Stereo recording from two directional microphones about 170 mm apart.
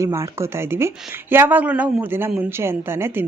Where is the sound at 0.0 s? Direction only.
15° right (ahead or behind).